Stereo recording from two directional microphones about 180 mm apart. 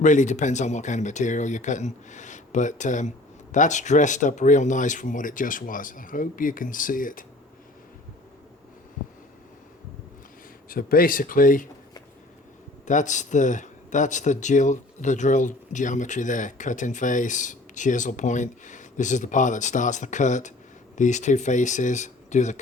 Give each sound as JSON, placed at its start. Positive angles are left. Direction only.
{"t": 0.0, "sound": "speech", "side_deg": 45}
{"t": 10.7, "sound": "speech", "side_deg": 55}
{"t": 12.8, "sound": "speech", "side_deg": 45}